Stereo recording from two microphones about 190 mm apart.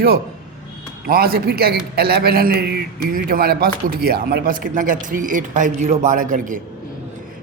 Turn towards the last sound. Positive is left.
turn(degrees=-45)  # may be behind; listen again after turning